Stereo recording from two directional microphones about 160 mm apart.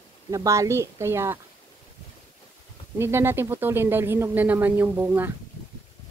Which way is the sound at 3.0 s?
15° right (ahead or behind).